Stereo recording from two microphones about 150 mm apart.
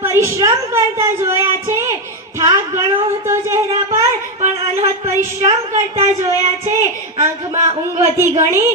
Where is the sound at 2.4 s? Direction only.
20° right (ahead or behind).